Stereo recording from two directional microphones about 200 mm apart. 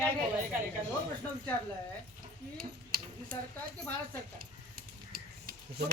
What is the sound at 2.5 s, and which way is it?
Tick-tock, 45° right (ahead or behind).